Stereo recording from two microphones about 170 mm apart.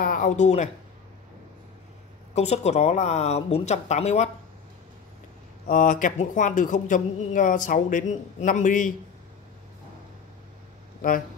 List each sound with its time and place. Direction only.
0.0 s speech: 50° left (ahead or behind)
2.3 s speech: 40° left (ahead or behind)
5.7 s speech: 55° left (ahead or behind)
11.0 s speech: 55° left (ahead or behind)